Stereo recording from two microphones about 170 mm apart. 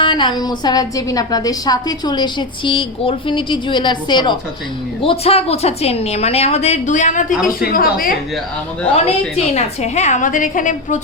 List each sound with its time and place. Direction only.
0.0 s a woman's voice: 30° left (ahead or behind); by 8.1 s 55° left (ahead or behind)
9.6 s a woman's voice: 40° left (ahead or behind)